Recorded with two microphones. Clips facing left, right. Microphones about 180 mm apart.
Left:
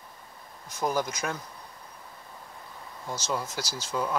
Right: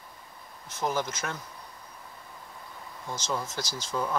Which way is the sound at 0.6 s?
10° left (ahead or behind).